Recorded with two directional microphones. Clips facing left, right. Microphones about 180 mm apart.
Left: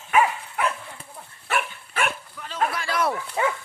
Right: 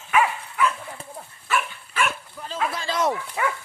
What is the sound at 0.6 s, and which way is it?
Dog, 60° left (ahead or behind).